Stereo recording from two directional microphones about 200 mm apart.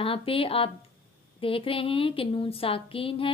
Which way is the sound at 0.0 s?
25° left (ahead or behind).